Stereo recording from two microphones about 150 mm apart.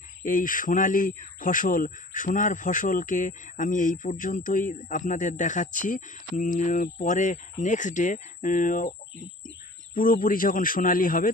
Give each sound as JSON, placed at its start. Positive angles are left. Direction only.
{"t": 0.3, "sound": "speech", "side_deg": 60}